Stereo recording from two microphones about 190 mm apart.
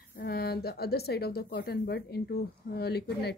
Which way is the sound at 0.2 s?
55° left (ahead or behind).